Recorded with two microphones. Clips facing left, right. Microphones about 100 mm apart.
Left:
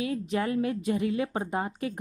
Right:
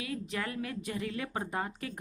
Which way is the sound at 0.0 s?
25° left (ahead or behind).